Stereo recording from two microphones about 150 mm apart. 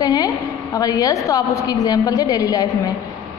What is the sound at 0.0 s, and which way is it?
A woman's voice, 25° left (ahead or behind).